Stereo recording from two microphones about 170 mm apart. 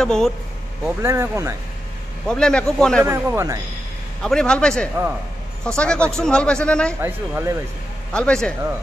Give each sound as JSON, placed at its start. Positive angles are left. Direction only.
{"t": 0.0, "sound": "a man's voice", "side_deg": 5}
{"t": 0.8, "sound": "speech", "side_deg": -15}
{"t": 2.2, "sound": "a man's voice", "side_deg": 5}
{"t": 3.0, "sound": "speech", "side_deg": -15}
{"t": 4.2, "sound": "a man's voice", "side_deg": 5}
{"t": 7.0, "sound": "speech", "side_deg": -10}
{"t": 8.1, "sound": "a man's voice", "side_deg": 5}